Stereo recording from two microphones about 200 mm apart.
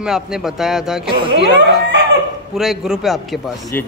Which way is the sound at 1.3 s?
60° right (ahead or behind).